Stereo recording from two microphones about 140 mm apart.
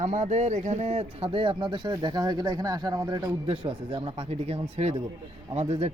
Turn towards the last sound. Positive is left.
turn(degrees=-50)  # may be behind; listen again after turning